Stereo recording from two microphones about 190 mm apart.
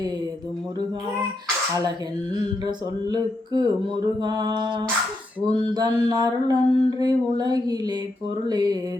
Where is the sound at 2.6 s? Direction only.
20° right (ahead or behind).